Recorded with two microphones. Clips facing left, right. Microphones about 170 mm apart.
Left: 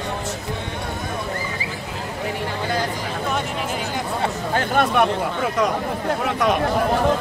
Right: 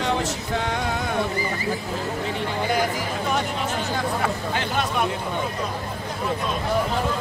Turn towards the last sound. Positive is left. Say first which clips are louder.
# left 6 dB
turn(degrees=75)  # may be behind; listen again after turning